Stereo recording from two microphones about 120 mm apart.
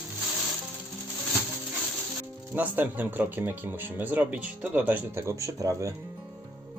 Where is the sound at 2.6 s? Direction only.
15° right (ahead or behind).